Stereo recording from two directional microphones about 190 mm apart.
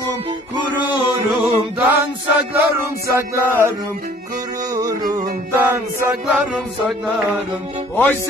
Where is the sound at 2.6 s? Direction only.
10° right (ahead or behind).